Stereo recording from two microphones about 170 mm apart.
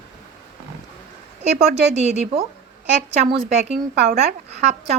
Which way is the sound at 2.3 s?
35° right (ahead or behind).